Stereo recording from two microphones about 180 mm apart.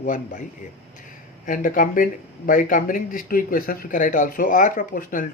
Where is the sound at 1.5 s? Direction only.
45° left (ahead or behind).